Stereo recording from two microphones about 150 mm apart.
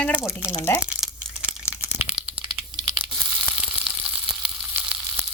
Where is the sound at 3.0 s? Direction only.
5° right (ahead or behind).